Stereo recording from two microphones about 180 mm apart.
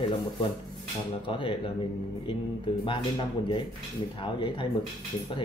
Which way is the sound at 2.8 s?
30° left (ahead or behind).